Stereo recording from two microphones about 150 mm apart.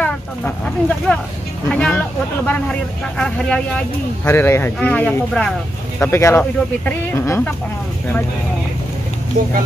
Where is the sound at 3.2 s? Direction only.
10° left (ahead or behind).